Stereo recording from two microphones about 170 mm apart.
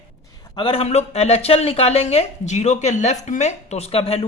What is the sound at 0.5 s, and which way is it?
Speech, 30° left (ahead or behind).